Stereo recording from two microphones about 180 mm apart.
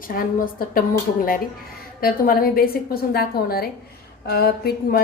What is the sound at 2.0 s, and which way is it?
A woman's voice, 55° left (ahead or behind).